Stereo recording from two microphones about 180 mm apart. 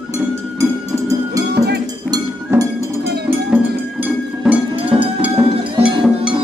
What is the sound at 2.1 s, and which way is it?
Music, 20° right (ahead or behind).